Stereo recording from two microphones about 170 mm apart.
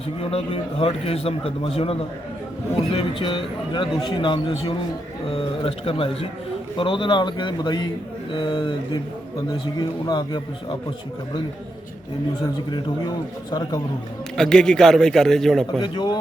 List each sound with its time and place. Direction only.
0.2 s speech: 35° left (ahead or behind)
12.7 s speech: 25° left (ahead or behind)
14.3 s a man's voice: 5° left (ahead or behind)
15.8 s speech: 25° left (ahead or behind)